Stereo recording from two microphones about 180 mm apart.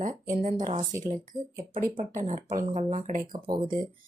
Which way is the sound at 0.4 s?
40° right (ahead or behind).